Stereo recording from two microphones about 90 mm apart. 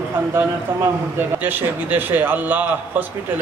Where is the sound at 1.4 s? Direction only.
20° right (ahead or behind).